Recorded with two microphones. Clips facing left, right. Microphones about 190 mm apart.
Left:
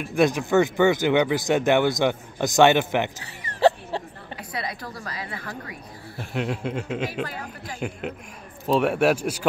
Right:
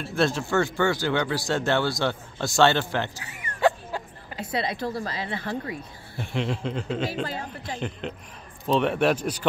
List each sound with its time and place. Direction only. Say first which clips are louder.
0.0 s speech: left 3 dB; 15° left (ahead or behind)
3.3 s a sound: left 3 dB; 35° left (ahead or behind)
4.4 s a woman's voice: right 5 dB; 25° right (ahead or behind)
6.1 s a man's voice: even; 5° left (ahead or behind)
7.2 s a woman's voice: right 2 dB; 25° right (ahead or behind)
8.6 s speech: left 2 dB; 10° left (ahead or behind)